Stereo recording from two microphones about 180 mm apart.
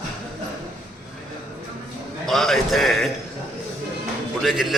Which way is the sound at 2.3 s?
Centre (ahead or behind).